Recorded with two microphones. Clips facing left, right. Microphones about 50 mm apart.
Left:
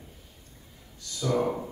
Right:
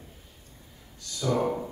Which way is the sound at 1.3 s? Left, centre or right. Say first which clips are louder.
Even; centre.